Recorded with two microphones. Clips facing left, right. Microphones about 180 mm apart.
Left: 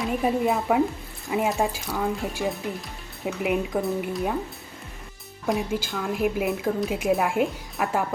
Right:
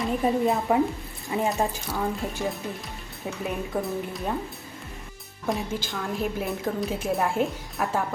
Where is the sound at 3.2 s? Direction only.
15° left (ahead or behind).